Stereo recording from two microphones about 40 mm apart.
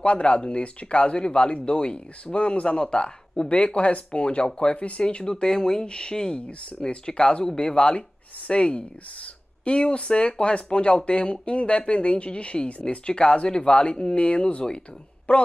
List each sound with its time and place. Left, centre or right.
0.0 s speech: left